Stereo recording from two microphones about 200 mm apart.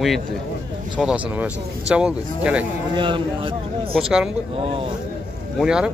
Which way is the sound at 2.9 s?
25° right (ahead or behind).